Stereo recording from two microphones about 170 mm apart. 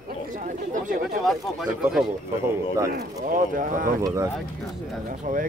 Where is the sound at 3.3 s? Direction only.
50° right (ahead or behind).